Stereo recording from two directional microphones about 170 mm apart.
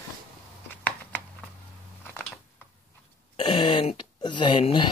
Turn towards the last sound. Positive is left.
turn(degrees=30)  # may be behind; listen again after turning